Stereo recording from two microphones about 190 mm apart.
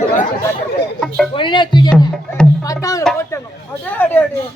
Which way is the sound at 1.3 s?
25° left (ahead or behind).